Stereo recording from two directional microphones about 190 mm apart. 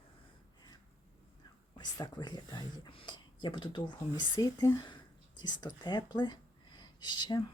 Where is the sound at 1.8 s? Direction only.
20° left (ahead or behind).